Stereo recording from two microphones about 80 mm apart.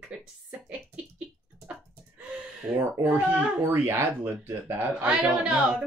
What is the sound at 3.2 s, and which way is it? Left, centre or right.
Speech, right.